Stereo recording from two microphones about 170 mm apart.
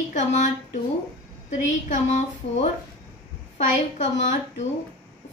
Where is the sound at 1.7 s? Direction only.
45° left (ahead or behind).